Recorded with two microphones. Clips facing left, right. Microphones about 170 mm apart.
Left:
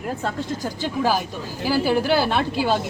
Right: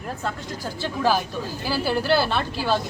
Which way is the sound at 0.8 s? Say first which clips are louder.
Even; 10° left (ahead or behind).